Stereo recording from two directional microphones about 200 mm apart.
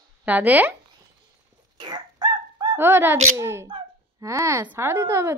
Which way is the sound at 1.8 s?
20° right (ahead or behind).